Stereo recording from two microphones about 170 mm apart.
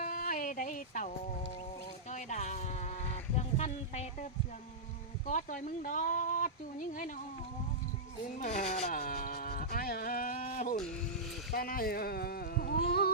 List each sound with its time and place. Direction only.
0.0 s a sound: 55° left (ahead or behind)
5.2 s speech: 50° left (ahead or behind)
8.4 s speech: 45° left (ahead or behind); by 13.1 s 70° left (ahead or behind)